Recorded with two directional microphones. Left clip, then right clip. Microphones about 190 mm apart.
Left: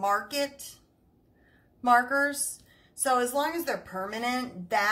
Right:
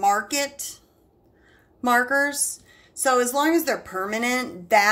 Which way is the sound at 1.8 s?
45° right (ahead or behind).